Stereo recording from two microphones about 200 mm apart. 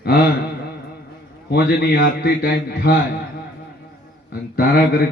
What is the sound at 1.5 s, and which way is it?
A man's voice, 50° left (ahead or behind).